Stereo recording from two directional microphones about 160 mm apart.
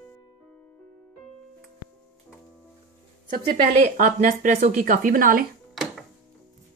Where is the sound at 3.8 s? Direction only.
50° right (ahead or behind).